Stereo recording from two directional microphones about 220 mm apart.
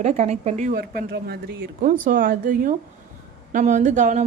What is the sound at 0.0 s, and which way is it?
Speech, 30° right (ahead or behind).